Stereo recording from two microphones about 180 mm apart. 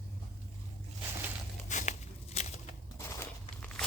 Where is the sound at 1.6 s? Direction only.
40° left (ahead or behind).